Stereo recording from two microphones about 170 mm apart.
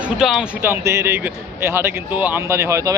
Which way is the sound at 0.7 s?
15° right (ahead or behind).